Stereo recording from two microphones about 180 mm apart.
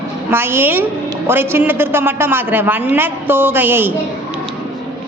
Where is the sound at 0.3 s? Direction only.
10° right (ahead or behind).